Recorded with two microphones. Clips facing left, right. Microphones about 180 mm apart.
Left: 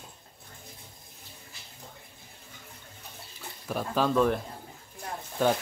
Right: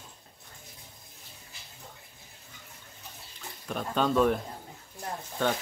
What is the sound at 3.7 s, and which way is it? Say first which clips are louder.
Speech: left 1 dB; 5° left (ahead or behind).